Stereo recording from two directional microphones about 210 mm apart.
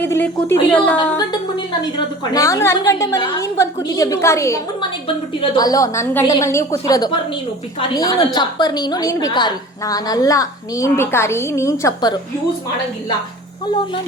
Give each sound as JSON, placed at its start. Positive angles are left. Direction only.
{"t": 0.0, "sound": "a woman's voice", "side_deg": 10}
{"t": 2.3, "sound": "a woman's voice", "side_deg": 15}